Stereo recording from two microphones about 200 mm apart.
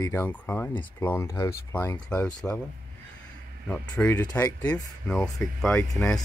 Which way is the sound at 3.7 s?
10° left (ahead or behind).